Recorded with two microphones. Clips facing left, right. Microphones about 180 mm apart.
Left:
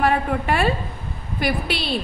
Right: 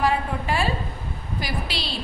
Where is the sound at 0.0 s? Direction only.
60° left (ahead or behind).